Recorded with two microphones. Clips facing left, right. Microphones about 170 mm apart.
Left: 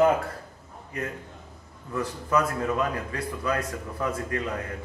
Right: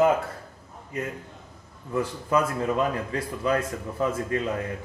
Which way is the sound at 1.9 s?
25° right (ahead or behind).